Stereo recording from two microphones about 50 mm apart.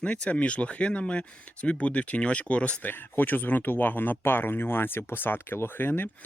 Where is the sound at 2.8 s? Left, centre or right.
Left.